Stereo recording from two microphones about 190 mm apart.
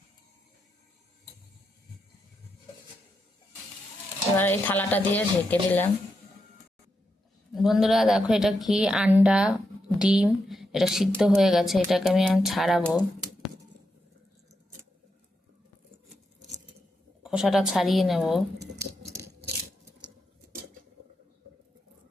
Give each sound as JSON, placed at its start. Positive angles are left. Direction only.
{"t": 4.4, "sound": "speech", "side_deg": 10}
{"t": 7.5, "sound": "a woman's voice", "side_deg": 0}
{"t": 17.2, "sound": "a woman's voice", "side_deg": -5}
{"t": 18.8, "sound": "a sound", "side_deg": -15}